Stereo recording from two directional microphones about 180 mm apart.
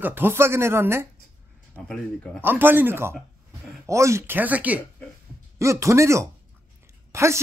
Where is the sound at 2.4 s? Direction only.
10° right (ahead or behind).